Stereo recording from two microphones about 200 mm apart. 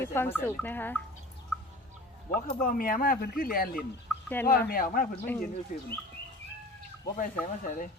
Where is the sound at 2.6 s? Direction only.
45° left (ahead or behind).